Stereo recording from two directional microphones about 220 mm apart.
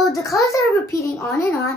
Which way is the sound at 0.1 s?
15° left (ahead or behind).